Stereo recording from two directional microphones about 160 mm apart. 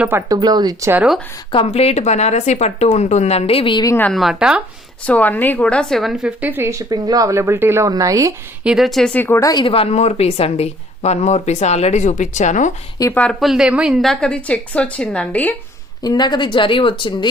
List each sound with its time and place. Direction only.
0.0 s a woman's voice: 15° right (ahead or behind)
0.3 s speech: 25° right (ahead or behind)
1.5 s speech: 40° left (ahead or behind)
3.9 s a woman's voice: 10° left (ahead or behind)
4.2 s speech: 5° right (ahead or behind)
5.0 s a woman's voice: 10° left (ahead or behind); by 8.3 s 20° right (ahead or behind)
8.6 s speech: centre (ahead or behind); by 12.7 s 50° left (ahead or behind)
13.0 s a woman's voice: 15° left (ahead or behind)
13.4 s a woman's voice: 5° right (ahead or behind)
16.0 s speech: 25° left (ahead or behind)